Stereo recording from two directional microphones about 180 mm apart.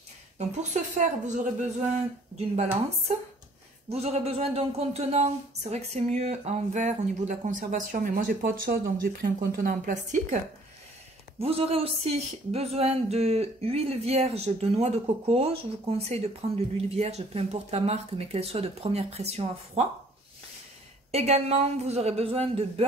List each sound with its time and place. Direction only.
0.4 s speech: 40° right (ahead or behind)
3.9 s speech: 35° right (ahead or behind)
11.3 s speech: 30° right (ahead or behind)
21.1 s speech: 35° right (ahead or behind)